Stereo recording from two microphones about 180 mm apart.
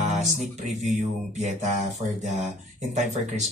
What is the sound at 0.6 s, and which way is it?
Speech, 40° right (ahead or behind).